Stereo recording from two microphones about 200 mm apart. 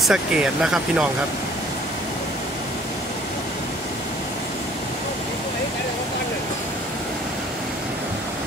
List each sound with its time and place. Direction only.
0.0 s speech: 5° right (ahead or behind)